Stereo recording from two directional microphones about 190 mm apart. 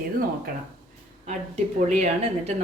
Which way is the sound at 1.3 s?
40° right (ahead or behind).